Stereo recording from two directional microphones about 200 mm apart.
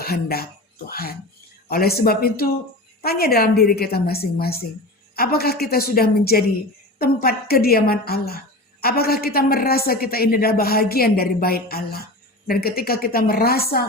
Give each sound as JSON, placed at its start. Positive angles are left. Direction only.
{"t": 0.0, "sound": "a woman's voice", "side_deg": 50}